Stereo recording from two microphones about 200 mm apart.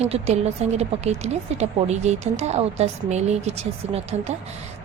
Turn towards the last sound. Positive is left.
turn(degrees=-30)  # may be behind; listen again after turning